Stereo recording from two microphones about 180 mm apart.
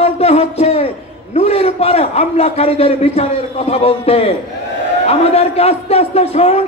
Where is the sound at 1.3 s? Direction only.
35° left (ahead or behind).